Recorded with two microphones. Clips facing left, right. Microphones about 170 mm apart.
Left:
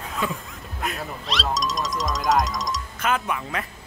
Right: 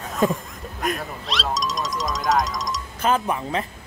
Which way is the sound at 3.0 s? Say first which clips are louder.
Right 4 dB; 30° right (ahead or behind).